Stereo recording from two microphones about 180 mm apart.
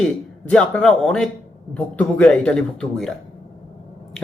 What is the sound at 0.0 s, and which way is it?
Speech, 5° left (ahead or behind).